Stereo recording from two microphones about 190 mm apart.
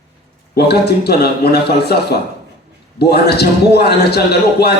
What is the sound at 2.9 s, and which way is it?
A man's voice, 60° left (ahead or behind).